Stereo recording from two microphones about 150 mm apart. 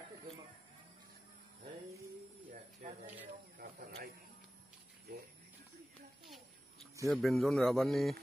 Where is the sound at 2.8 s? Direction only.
60° right (ahead or behind).